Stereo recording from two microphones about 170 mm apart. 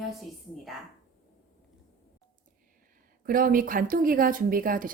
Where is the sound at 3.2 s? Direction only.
55° right (ahead or behind).